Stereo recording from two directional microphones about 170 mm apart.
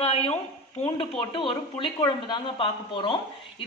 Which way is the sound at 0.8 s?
30° left (ahead or behind).